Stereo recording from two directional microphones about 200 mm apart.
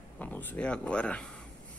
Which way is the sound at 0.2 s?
10° left (ahead or behind).